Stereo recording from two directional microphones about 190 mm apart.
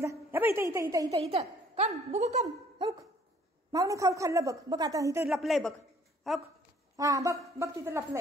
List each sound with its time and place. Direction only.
0.0 s a woman's voice: 15° right (ahead or behind)
1.2 s a woman's voice: 35° right (ahead or behind)
3.7 s a woman's voice: 15° right (ahead or behind)
5.3 s speech: centre (ahead or behind)
6.2 s dog: centre (ahead or behind)
7.0 s a woman's voice: 15° right (ahead or behind)